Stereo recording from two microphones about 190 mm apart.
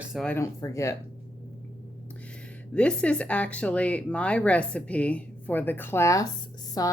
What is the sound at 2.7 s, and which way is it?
A woman's voice, 5° left (ahead or behind).